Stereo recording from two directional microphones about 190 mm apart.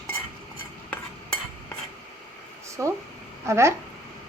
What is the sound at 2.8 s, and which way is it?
Speech, 15° right (ahead or behind).